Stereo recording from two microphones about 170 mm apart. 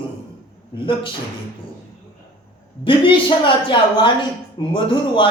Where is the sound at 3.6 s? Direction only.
30° left (ahead or behind).